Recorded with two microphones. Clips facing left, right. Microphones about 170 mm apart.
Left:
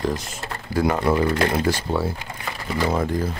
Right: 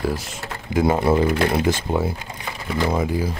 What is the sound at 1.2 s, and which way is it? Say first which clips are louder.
Speech: right 1 dB; 10° right (ahead or behind).